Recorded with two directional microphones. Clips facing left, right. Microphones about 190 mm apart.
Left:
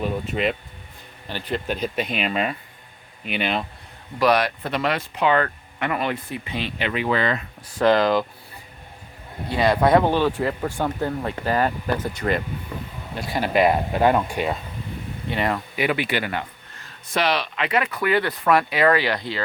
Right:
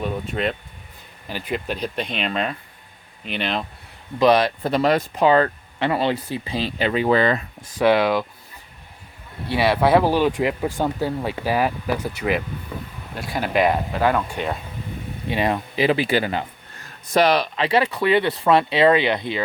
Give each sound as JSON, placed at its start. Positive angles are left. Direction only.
{"t": 0.0, "sound": "speech", "side_deg": 0}
{"t": 4.2, "sound": "speech", "side_deg": -25}
{"t": 7.8, "sound": "speech", "side_deg": -5}
{"t": 9.6, "sound": "speech", "side_deg": -5}
{"t": 14.0, "sound": "speech", "side_deg": 20}
{"t": 15.3, "sound": "speech", "side_deg": -20}
{"t": 17.1, "sound": "speech", "side_deg": -40}